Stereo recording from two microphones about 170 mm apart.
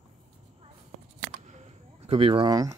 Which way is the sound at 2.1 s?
35° right (ahead or behind).